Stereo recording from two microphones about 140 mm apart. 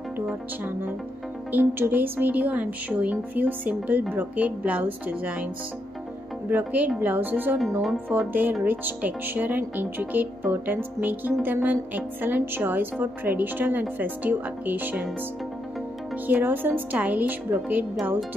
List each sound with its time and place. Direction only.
0.3 s speech: 15° right (ahead or behind)
6.5 s speech: 10° right (ahead or behind)
16.3 s speech: 15° right (ahead or behind)